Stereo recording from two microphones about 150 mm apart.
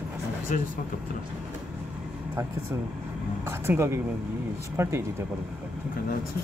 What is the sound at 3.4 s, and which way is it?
Speech, 15° right (ahead or behind).